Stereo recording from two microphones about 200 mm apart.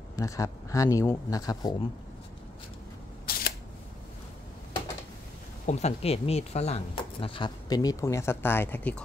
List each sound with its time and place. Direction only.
0.1 s speech: 15° left (ahead or behind)
3.3 s single-lens reflex camera: 50° left (ahead or behind)
5.7 s speech: 35° left (ahead or behind); by 9.0 s 10° left (ahead or behind)